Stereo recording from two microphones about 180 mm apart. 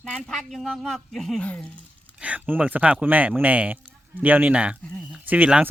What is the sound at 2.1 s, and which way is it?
Speech, 10° right (ahead or behind).